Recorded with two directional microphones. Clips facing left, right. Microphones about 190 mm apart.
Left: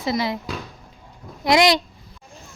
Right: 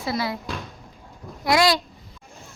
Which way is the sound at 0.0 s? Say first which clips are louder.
Left 3 dB; 20° left (ahead or behind).